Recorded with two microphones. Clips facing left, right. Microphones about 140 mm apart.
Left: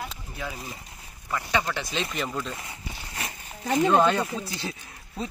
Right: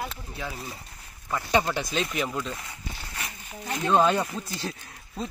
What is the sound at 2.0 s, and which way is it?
Speech, 5° right (ahead or behind).